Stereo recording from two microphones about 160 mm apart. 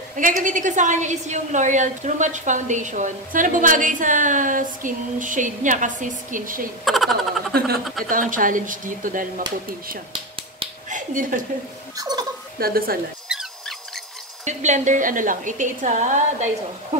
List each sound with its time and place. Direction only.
0.1 s a woman's voice: 55° right (ahead or behind)
6.8 s speech: centre (ahead or behind)
7.5 s a woman's voice: 80° right
8.1 s speech: 55° right (ahead or behind)
10.9 s speech: 55° right (ahead or behind)
12.0 s speech: 25° right (ahead or behind)
12.5 s a woman's voice: 70° right (ahead or behind)
13.3 s mouse: 5° right (ahead or behind)
14.4 s a woman's voice: 45° right (ahead or behind)